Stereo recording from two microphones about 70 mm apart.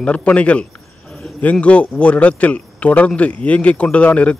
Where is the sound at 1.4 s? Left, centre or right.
Centre.